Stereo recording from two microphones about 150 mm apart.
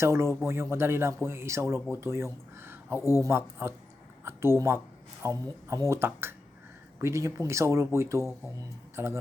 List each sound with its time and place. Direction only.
0.0 s speech: 15° right (ahead or behind)
4.2 s a sound: 15° right (ahead or behind)
5.2 s speech: 20° right (ahead or behind)